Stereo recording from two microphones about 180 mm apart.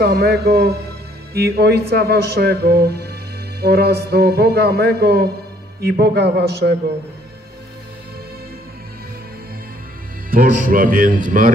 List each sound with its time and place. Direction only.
0.0 s a man's voice: 65° right (ahead or behind)
10.3 s speech: 50° right (ahead or behind)